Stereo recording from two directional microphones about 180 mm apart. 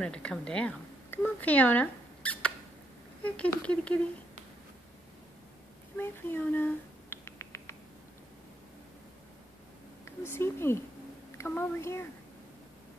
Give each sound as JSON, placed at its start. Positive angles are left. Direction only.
{"t": 0.0, "sound": "speech", "side_deg": 5}
{"t": 5.9, "sound": "a sound", "side_deg": 10}
{"t": 10.0, "sound": "speech", "side_deg": 15}